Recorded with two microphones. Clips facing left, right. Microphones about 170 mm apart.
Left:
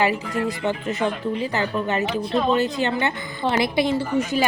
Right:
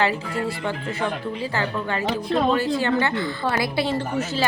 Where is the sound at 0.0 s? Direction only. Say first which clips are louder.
Left 1 dB; 15° left (ahead or behind).